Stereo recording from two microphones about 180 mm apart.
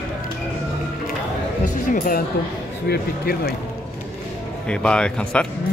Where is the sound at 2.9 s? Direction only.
60° left (ahead or behind).